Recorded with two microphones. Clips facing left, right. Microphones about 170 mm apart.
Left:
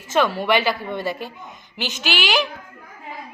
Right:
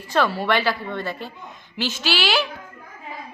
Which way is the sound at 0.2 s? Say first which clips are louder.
Left 2 dB; 5° left (ahead or behind).